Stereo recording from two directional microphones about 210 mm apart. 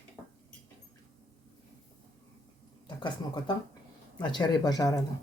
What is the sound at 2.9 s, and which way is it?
Speech, 20° left (ahead or behind).